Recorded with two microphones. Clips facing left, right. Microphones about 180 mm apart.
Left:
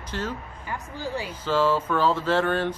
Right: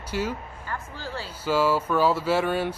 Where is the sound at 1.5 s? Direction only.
10° right (ahead or behind).